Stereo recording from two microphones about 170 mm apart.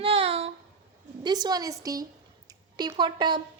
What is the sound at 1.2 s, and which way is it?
A woman's voice, 25° right (ahead or behind).